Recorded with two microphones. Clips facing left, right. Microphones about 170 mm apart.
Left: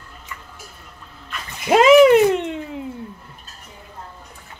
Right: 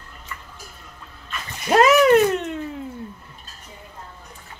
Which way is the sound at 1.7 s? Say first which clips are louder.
Left 4 dB; 15° left (ahead or behind).